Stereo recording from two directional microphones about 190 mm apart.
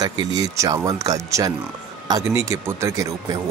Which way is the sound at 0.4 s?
15° right (ahead or behind).